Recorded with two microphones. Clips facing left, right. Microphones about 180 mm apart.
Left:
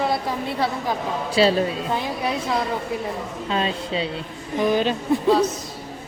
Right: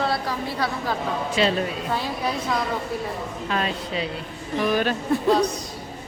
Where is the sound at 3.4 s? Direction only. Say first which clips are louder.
Left 2 dB; 25° left (ahead or behind).